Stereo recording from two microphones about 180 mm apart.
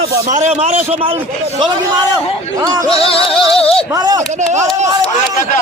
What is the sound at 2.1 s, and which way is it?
Speech, 20° right (ahead or behind).